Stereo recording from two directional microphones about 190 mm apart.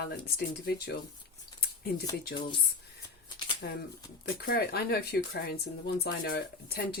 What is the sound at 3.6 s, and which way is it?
Speech, 60° left (ahead or behind).